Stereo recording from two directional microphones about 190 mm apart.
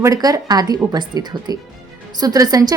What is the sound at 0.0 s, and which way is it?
A woman's voice, 20° right (ahead or behind).